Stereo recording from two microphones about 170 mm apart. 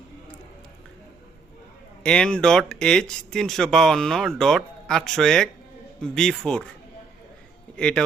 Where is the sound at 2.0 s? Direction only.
5° left (ahead or behind).